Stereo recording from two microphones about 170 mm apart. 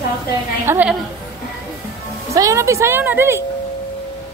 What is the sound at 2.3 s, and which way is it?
A woman's voice, 20° right (ahead or behind).